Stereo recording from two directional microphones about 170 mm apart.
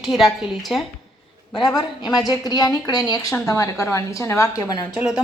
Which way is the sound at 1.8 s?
25° left (ahead or behind).